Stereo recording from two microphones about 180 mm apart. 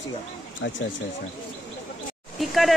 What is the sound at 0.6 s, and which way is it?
Speech, 90° left.